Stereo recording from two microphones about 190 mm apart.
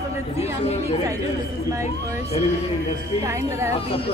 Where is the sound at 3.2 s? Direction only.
15° right (ahead or behind).